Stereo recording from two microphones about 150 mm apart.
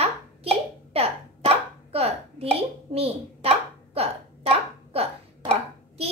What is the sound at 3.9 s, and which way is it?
Hiccup, 40° right (ahead or behind).